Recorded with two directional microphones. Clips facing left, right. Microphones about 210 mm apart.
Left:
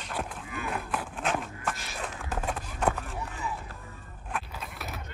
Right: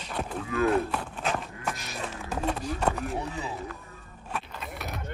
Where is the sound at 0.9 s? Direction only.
5° left (ahead or behind).